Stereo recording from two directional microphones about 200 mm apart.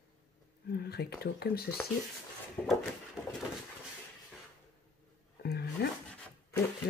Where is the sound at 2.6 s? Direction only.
10° left (ahead or behind).